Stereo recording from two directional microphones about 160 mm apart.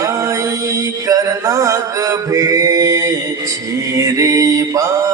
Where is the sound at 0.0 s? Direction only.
20° right (ahead or behind).